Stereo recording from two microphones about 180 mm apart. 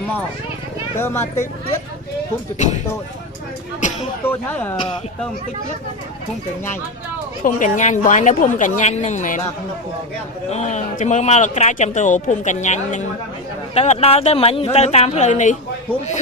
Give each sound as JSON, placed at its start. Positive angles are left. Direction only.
{"t": 0.9, "sound": "speech", "side_deg": 15}
{"t": 2.5, "sound": "speech", "side_deg": 40}
{"t": 4.2, "sound": "speech", "side_deg": 10}
{"t": 7.4, "sound": "a woman's voice", "side_deg": 45}
{"t": 10.5, "sound": "speech", "side_deg": 40}